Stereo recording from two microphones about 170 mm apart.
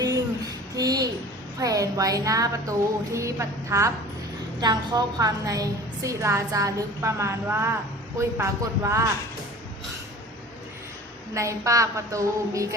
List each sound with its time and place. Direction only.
0.8 s a woman's voice: 20° right (ahead or behind)
11.3 s a woman's voice: 15° right (ahead or behind)